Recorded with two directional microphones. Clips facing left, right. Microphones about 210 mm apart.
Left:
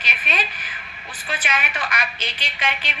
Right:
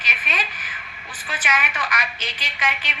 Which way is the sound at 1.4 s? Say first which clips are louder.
Right 2 dB; 30° left (ahead or behind).